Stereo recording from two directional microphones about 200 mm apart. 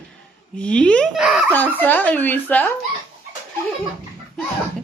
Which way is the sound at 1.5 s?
10° left (ahead or behind).